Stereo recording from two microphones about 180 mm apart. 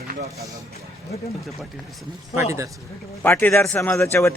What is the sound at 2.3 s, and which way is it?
Speech, 15° right (ahead or behind).